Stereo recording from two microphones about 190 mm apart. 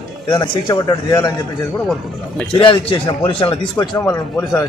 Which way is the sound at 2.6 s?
25° left (ahead or behind).